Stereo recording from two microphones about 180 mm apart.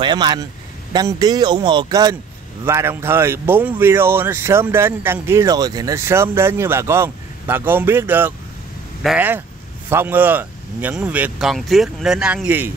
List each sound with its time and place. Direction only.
0.0 s speech: 25° right (ahead or behind)